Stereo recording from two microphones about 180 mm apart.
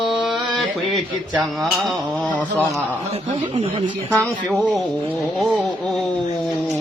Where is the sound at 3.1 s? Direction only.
30° right (ahead or behind).